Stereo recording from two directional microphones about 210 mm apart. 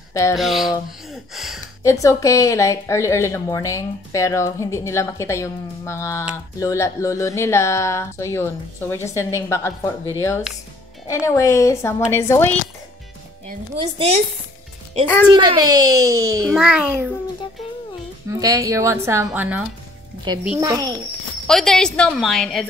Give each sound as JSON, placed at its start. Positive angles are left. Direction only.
{"t": 0.1, "sound": "speech", "side_deg": 15}
{"t": 0.4, "sound": "speech", "side_deg": 0}
{"t": 1.8, "sound": "a woman's voice", "side_deg": 15}
{"t": 11.1, "sound": "a woman's voice", "side_deg": 15}
{"t": 13.7, "sound": "a child's voice", "side_deg": -25}
{"t": 15.2, "sound": "a woman's voice", "side_deg": -20}
{"t": 16.5, "sound": "speech", "side_deg": -5}
{"t": 18.4, "sound": "a woman's voice", "side_deg": -15}
{"t": 20.6, "sound": "a child's voice", "side_deg": -20}
{"t": 21.5, "sound": "speech", "side_deg": 0}